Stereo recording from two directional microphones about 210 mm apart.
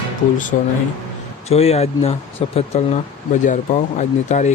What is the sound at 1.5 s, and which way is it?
Speech, 30° left (ahead or behind).